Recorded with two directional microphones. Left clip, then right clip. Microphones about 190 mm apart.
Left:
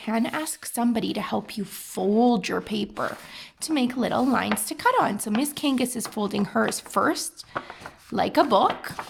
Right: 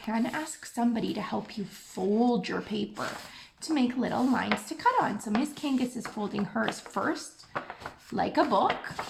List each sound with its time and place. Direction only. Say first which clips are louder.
0.0 s speech: left 5 dB; 50° left (ahead or behind)